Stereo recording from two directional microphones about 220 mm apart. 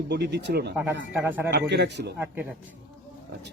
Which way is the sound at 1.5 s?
50° right (ahead or behind).